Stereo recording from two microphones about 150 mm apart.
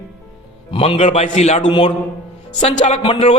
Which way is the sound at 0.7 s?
40° left (ahead or behind).